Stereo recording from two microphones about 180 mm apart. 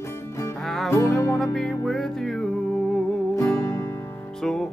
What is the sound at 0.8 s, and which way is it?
Music, 15° left (ahead or behind).